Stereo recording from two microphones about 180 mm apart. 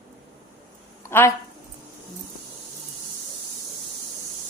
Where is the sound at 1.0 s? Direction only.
15° left (ahead or behind).